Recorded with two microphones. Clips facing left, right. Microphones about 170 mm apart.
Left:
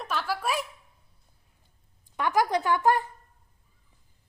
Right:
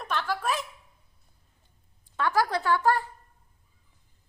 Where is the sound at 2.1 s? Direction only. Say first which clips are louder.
Left 1 dB; 20° left (ahead or behind).